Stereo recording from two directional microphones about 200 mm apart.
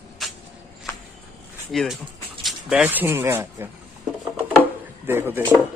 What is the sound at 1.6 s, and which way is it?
Speech, centre (ahead or behind).